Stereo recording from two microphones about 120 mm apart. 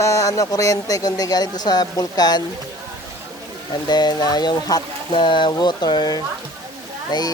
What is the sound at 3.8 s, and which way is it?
Speech, 35° left (ahead or behind).